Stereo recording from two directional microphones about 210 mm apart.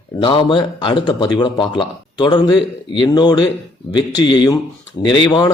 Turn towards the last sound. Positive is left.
turn(degrees=20)  # may be behind; listen again after turning